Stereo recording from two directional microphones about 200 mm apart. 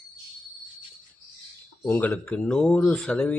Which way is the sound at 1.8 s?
5° left (ahead or behind).